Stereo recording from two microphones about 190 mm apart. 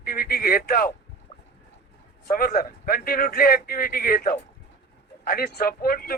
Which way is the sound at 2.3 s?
50° left (ahead or behind).